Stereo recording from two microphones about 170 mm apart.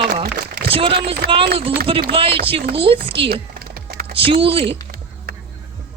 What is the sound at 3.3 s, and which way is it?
Typing, 65° right (ahead or behind).